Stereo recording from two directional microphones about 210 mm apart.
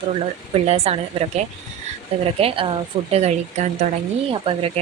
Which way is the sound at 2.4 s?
25° right (ahead or behind).